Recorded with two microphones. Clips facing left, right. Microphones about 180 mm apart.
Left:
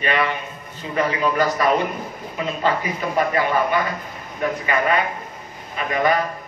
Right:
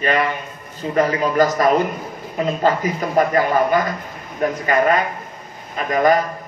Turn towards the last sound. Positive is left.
turn(degrees=-40)  # may be behind; listen again after turning